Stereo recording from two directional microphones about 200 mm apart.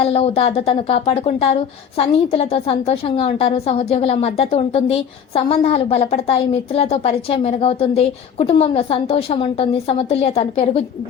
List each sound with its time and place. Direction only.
0.0 s a woman's voice: 30° left (ahead or behind)